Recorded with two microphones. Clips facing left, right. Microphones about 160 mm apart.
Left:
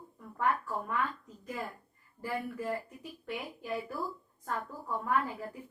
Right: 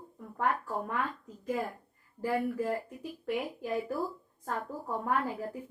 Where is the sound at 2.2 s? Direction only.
40° right (ahead or behind).